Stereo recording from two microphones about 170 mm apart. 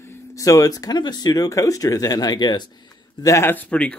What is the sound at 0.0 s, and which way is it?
Speech, 15° left (ahead or behind).